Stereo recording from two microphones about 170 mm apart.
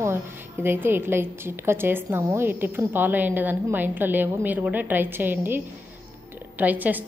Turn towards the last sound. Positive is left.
turn(degrees=-10)  # may be behind; listen again after turning